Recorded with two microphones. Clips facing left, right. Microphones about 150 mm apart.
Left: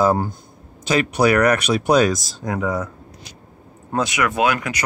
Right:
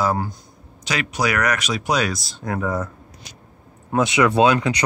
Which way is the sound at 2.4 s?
15° left (ahead or behind).